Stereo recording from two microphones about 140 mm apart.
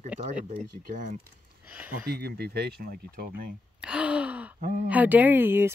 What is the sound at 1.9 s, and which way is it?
Speech, 90° right.